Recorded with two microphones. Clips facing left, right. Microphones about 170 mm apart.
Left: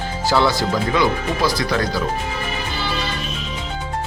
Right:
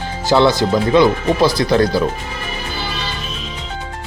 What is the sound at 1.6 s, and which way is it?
Speech, 30° right (ahead or behind).